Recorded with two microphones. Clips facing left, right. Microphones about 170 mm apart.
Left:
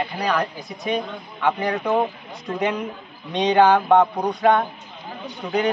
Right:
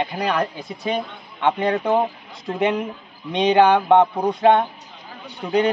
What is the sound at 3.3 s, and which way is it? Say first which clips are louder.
Speech: right 1 dB; 20° right (ahead or behind).